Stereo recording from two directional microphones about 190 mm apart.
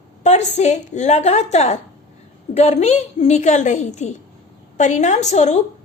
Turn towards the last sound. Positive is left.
turn(degrees=35)  # may be behind; listen again after turning